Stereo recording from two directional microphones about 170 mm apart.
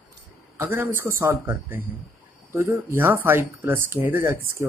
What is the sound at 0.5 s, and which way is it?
Speech, 15° right (ahead or behind).